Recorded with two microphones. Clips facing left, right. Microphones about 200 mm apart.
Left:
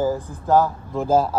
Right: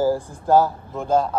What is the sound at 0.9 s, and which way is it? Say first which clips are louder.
Speech: left 2 dB; 5° left (ahead or behind).